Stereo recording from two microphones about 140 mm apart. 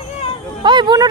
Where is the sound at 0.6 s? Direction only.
35° right (ahead or behind).